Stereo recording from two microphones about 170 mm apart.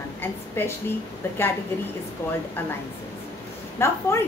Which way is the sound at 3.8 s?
15° left (ahead or behind).